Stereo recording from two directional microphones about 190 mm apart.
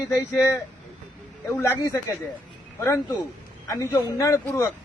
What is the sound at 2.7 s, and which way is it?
A man's voice, 15° left (ahead or behind).